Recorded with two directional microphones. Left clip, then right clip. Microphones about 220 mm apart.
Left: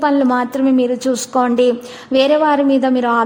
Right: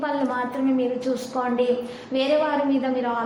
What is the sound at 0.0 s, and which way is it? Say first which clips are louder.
A woman's voice: left 10 dB; 45° left (ahead or behind).